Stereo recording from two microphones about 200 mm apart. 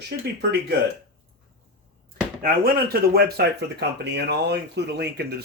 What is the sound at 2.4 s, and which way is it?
Speech, 50° right (ahead or behind).